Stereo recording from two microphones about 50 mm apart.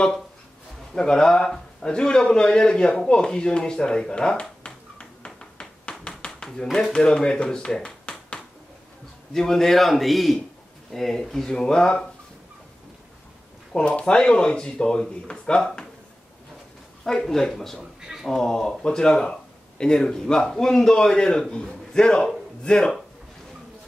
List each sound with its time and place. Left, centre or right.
0.9 s speech: centre
3.3 s finger snapping: centre
6.9 s a man's voice: centre
13.7 s speech: centre
17.0 s speech: centre